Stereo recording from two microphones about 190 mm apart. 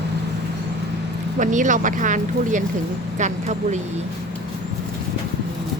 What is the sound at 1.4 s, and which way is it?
Speech, 40° right (ahead or behind).